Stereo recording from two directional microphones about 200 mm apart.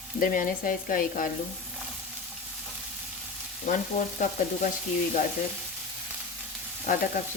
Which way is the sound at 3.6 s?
40° left (ahead or behind).